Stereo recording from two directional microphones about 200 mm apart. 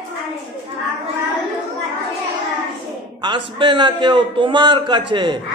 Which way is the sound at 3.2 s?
25° right (ahead or behind).